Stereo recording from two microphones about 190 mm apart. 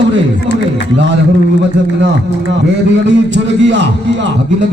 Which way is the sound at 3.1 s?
70° right (ahead or behind).